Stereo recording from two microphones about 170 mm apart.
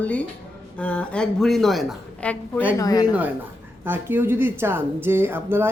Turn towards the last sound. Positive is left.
turn(degrees=-15)  # may be behind; listen again after turning